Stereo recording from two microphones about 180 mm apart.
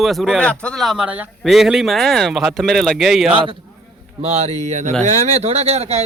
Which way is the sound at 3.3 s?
30° right (ahead or behind).